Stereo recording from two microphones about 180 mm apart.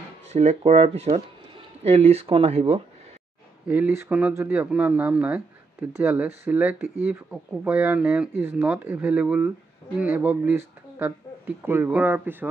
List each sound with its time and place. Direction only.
0.3 s speech: 40° right (ahead or behind)
3.6 s speech: 10° right (ahead or behind)